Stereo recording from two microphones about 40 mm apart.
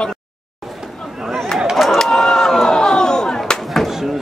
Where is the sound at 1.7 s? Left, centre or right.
Centre.